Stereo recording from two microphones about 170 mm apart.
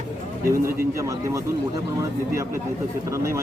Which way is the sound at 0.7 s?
20° right (ahead or behind).